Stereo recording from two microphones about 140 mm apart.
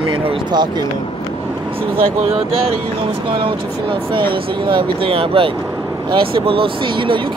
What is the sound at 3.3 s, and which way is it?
Speech, 40° right (ahead or behind).